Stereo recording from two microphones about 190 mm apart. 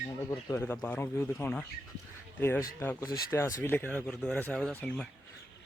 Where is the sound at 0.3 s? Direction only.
10° left (ahead or behind).